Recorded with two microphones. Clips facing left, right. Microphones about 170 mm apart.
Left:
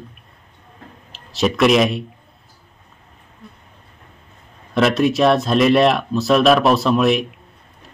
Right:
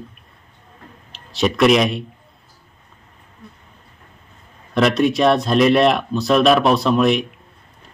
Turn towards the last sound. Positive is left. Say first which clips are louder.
# even
turn(degrees=0)  # may be behind; listen again after turning